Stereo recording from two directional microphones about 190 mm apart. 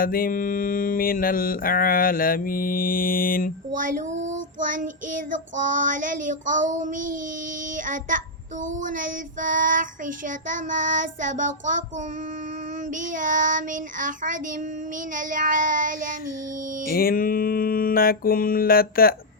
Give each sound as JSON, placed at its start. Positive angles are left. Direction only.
{"t": 0.0, "sound": "mantra", "side_deg": 50}
{"t": 3.9, "sound": "child singing", "side_deg": -40}
{"t": 8.6, "sound": "child singing", "side_deg": -45}
{"t": 13.0, "sound": "child singing", "side_deg": -45}
{"t": 16.8, "sound": "mantra", "side_deg": 50}